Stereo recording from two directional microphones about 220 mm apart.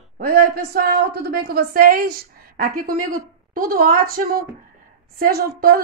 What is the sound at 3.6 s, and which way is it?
A woman's voice, 40° right (ahead or behind).